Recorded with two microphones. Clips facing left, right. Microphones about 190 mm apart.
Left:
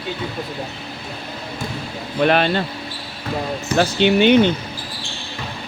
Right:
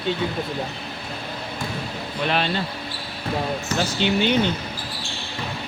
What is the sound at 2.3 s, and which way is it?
Speech, 60° left (ahead or behind).